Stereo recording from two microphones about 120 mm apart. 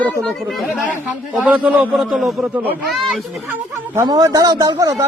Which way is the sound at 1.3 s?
10° right (ahead or behind).